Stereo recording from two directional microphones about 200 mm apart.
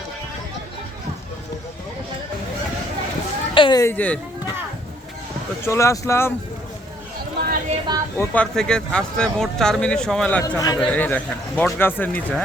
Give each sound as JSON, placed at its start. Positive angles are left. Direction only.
{"t": 3.5, "sound": "a man's voice", "side_deg": 25}
{"t": 5.6, "sound": "a man's voice", "side_deg": 15}
{"t": 7.3, "sound": "a sound", "side_deg": -50}
{"t": 7.9, "sound": "speech", "side_deg": -20}
{"t": 8.2, "sound": "a man's voice", "side_deg": 5}